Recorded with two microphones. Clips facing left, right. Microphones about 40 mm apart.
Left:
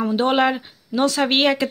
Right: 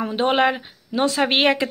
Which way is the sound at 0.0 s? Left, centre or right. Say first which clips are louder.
Left 1 dB; right.